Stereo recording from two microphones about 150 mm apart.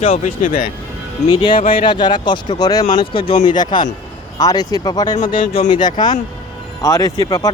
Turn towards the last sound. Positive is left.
turn(degrees=25)  # may be behind; listen again after turning